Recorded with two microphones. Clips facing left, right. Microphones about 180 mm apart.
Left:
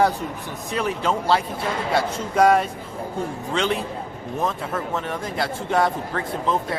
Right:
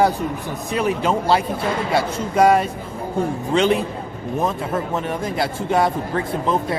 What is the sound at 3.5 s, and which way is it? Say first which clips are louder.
A man's voice: right 6 dB; 15° right (ahead or behind).